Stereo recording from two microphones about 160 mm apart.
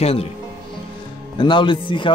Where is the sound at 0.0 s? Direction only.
40° left (ahead or behind).